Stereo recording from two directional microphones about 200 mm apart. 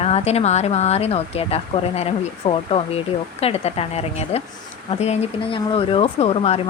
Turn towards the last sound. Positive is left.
turn(degrees=30)  # may be behind; listen again after turning